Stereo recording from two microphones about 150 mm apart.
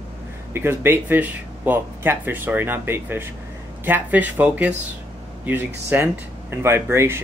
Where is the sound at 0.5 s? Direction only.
15° right (ahead or behind).